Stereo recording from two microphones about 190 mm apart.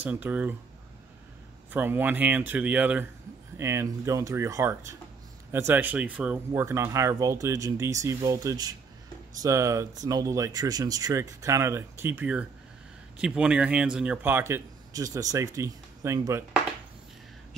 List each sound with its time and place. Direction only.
0.0 s speech: 10° right (ahead or behind)
1.7 s speech: 10° right (ahead or behind)